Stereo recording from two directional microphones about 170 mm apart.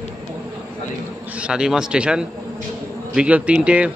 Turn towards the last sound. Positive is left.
turn(degrees=-5)  # may be behind; listen again after turning